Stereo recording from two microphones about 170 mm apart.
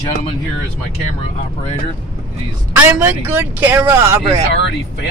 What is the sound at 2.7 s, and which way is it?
Speech, 10° right (ahead or behind).